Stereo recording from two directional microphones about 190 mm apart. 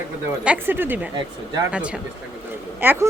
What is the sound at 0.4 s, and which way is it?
Speech, 10° right (ahead or behind).